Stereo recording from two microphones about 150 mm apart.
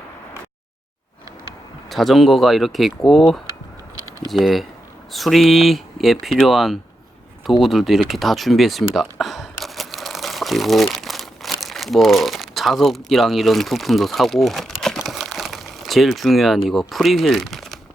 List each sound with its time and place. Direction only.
1.9 s speech: centre (ahead or behind)
7.6 s a sound: centre (ahead or behind)
16.6 s speech: centre (ahead or behind)